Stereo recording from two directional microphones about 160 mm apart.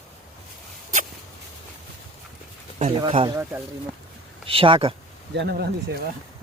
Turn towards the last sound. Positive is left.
turn(degrees=-90)